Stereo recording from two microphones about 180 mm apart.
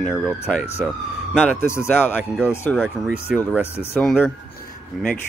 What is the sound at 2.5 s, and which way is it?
Speech, 15° left (ahead or behind).